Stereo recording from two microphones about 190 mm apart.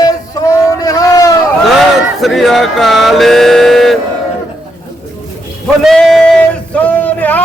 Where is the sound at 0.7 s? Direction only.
20° left (ahead or behind).